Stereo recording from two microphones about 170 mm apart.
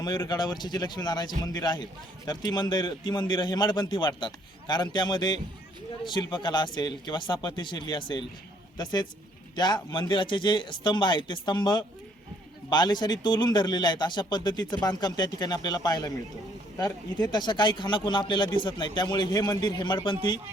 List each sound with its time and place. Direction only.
0.3 s a man's voice: 25° left (ahead or behind)